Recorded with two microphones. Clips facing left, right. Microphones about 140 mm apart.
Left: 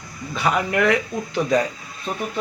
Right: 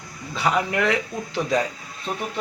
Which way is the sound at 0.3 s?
20° right (ahead or behind).